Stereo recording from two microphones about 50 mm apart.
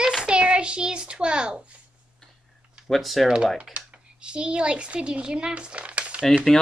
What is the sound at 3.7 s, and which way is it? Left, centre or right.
Speech, centre.